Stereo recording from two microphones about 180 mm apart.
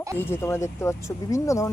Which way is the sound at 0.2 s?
10° left (ahead or behind).